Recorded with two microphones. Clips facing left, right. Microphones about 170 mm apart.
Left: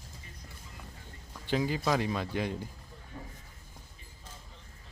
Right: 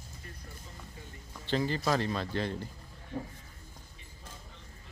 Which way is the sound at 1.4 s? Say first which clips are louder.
Even; 10° left (ahead or behind).